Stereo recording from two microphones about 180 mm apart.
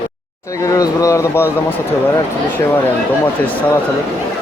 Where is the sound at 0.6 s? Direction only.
20° left (ahead or behind).